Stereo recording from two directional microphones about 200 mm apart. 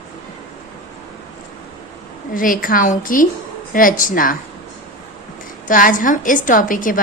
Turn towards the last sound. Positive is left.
turn(degrees=40)  # may be behind; listen again after turning